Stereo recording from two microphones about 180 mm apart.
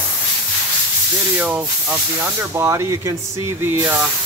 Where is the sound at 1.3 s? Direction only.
10° right (ahead or behind).